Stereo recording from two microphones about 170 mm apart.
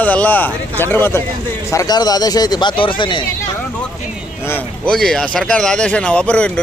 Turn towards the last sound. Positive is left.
turn(degrees=5)  # may be behind; listen again after turning